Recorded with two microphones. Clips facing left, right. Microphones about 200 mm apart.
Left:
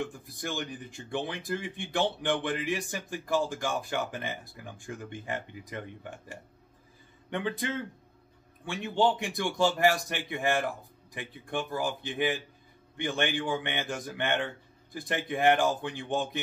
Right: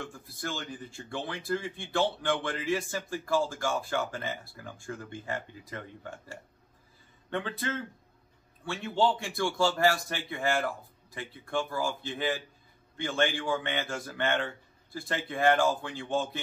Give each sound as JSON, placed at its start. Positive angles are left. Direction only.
{"t": 0.0, "sound": "speech", "side_deg": 15}